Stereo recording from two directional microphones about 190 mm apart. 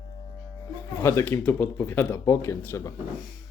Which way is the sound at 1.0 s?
10° left (ahead or behind).